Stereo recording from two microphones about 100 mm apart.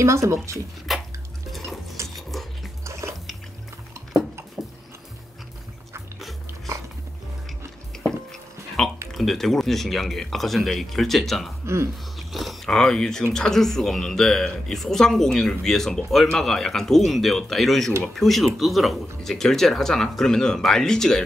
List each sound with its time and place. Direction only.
0.0 s speech: 30° right (ahead or behind)
0.9 s drip: centre (ahead or behind)
1.5 s a sound: centre (ahead or behind)
2.1 s music: centre (ahead or behind)
2.8 s a sound: 30° right (ahead or behind)
4.6 s music: 5° right (ahead or behind)
8.0 s a sound: 5° left (ahead or behind)
9.1 s speech: centre (ahead or behind)
11.6 s speech: 25° right (ahead or behind)
12.2 s speech: centre (ahead or behind)